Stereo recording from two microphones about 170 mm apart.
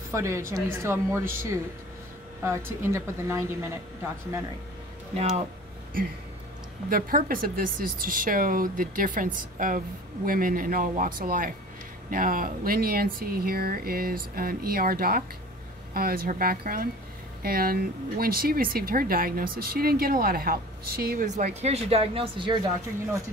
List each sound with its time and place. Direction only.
0.1 s a woman's voice: 15° right (ahead or behind)
6.9 s speech: 55° right (ahead or behind); by 22.6 s 30° right (ahead or behind)